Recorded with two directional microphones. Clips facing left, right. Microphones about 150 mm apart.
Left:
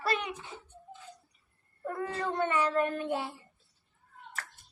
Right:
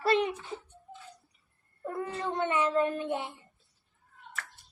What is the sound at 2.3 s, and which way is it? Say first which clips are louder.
Child singing: right 1 dB; 20° right (ahead or behind).